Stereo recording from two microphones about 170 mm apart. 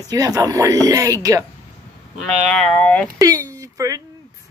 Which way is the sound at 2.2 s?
5° left (ahead or behind).